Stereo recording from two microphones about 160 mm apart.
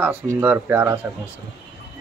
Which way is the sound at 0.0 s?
10° right (ahead or behind).